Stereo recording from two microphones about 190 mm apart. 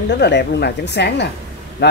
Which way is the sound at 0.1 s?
65° left (ahead or behind).